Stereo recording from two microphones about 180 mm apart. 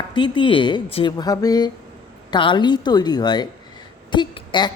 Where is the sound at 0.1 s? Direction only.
25° left (ahead or behind).